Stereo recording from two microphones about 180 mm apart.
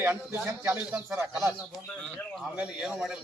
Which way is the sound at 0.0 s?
10° right (ahead or behind).